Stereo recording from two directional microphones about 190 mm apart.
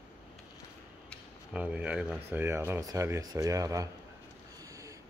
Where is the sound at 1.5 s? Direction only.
5° right (ahead or behind).